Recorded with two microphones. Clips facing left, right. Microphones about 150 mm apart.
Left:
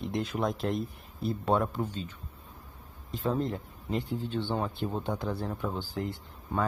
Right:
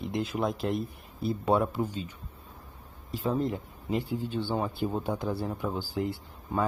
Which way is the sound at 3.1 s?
10° right (ahead or behind).